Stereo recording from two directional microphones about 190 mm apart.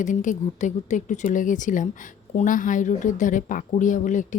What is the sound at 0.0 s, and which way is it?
A woman's voice, 40° left (ahead or behind).